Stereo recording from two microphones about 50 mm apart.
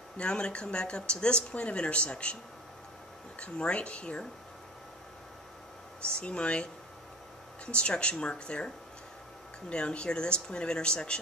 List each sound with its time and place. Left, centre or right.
0.2 s speech: left
3.3 s speech: left
6.0 s speech: left